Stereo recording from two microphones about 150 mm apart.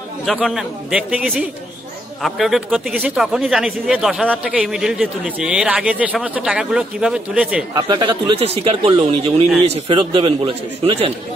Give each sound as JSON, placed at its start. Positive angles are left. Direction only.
{"t": 0.2, "sound": "speech", "side_deg": 0}
{"t": 7.7, "sound": "speech", "side_deg": -30}